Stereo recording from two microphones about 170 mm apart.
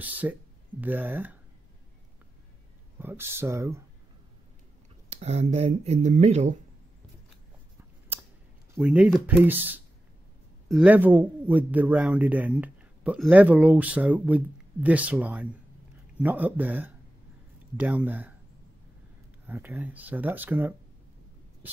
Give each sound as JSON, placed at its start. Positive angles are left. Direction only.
{"t": 0.0, "sound": "speech", "side_deg": -10}
{"t": 3.0, "sound": "speech", "side_deg": -15}
{"t": 5.1, "sound": "speech", "side_deg": -40}
{"t": 8.1, "sound": "a sound", "side_deg": -10}
{"t": 8.7, "sound": "speech", "side_deg": -5}
{"t": 19.4, "sound": "speech", "side_deg": -10}